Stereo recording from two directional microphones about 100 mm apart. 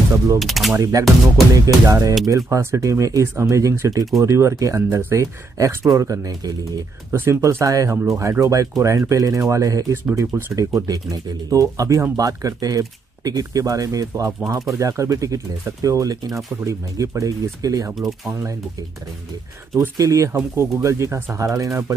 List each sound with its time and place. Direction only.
0.4 s speech: centre (ahead or behind)
1.0 s speech: 35° right (ahead or behind)
17.9 s speech: centre (ahead or behind)
20.0 s speech: 35° right (ahead or behind)